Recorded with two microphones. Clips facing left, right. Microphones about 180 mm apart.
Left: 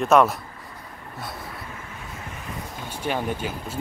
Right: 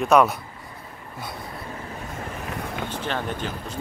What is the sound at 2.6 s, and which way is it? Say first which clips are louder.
Vehicle: right 6 dB; 65° right (ahead or behind).